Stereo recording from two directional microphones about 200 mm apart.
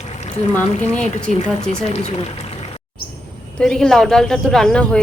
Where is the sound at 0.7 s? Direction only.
35° left (ahead or behind).